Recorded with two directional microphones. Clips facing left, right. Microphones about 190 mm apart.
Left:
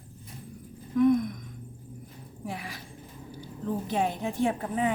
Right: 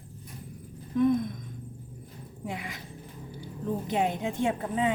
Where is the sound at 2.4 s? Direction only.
20° right (ahead or behind).